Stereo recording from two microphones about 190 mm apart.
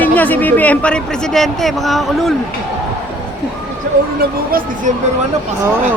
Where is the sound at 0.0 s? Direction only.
10° left (ahead or behind).